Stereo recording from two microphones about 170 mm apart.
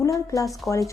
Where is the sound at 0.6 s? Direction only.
5° left (ahead or behind).